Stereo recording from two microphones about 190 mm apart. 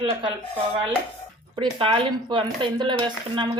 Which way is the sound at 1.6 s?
25° right (ahead or behind).